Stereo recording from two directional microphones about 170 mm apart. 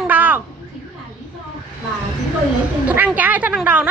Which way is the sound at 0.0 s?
10° right (ahead or behind).